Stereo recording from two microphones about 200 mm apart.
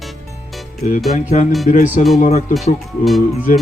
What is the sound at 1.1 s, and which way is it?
Speech, 35° left (ahead or behind).